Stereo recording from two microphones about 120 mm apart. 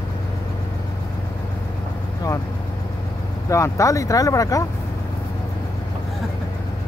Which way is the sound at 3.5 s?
25° left (ahead or behind).